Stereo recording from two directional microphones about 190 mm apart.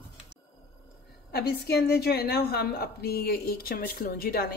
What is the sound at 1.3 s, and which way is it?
A woman's voice, 55° left (ahead or behind).